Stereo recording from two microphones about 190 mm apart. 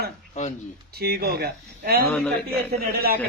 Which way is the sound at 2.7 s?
55° right (ahead or behind).